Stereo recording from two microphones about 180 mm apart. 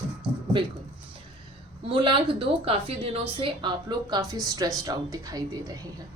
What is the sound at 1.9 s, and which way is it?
A woman's voice, 30° right (ahead or behind).